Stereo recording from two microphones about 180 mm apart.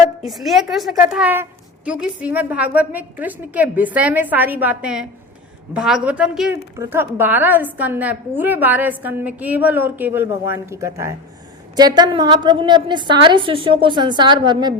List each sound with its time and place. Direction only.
0.3 s a woman's voice: centre (ahead or behind)
6.5 s a woman's voice: 15° right (ahead or behind)